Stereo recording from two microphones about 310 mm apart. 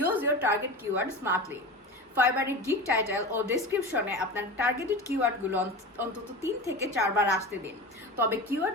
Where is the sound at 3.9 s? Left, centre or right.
Centre.